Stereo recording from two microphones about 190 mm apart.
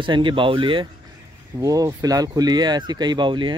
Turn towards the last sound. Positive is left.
turn(degrees=-25)  # may be behind; listen again after turning